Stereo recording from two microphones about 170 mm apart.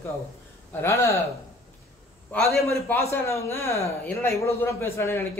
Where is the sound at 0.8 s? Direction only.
15° left (ahead or behind).